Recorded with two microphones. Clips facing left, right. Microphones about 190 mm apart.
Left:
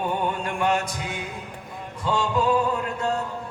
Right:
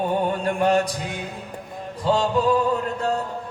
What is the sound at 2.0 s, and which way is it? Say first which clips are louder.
Music: right 3 dB; 40° right (ahead or behind).